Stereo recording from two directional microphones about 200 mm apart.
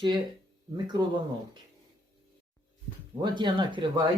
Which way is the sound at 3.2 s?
20° right (ahead or behind).